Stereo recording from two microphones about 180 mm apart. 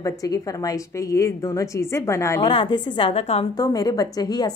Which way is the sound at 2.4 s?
25° left (ahead or behind).